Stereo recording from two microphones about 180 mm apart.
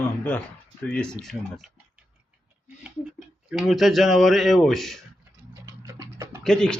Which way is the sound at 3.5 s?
Centre (ahead or behind).